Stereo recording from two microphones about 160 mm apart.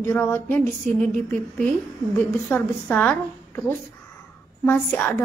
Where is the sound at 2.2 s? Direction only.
10° left (ahead or behind).